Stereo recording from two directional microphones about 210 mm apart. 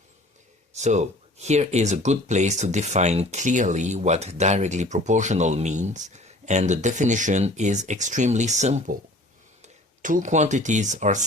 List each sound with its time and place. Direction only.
0.7 s speech: 35° right (ahead or behind)
10.0 s speech: 40° right (ahead or behind)